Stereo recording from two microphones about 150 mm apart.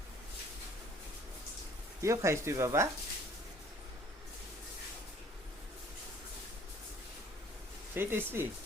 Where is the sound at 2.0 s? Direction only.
20° right (ahead or behind).